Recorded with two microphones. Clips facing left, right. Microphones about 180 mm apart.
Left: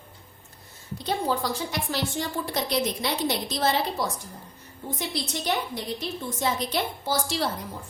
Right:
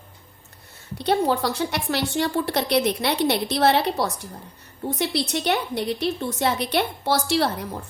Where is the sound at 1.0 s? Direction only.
70° right (ahead or behind).